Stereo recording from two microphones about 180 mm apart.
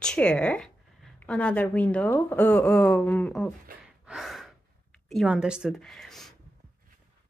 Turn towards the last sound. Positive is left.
turn(degrees=0)  # may be behind; listen again after turning